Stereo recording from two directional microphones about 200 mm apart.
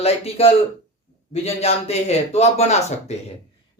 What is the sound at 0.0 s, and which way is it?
A man's voice, 30° left (ahead or behind).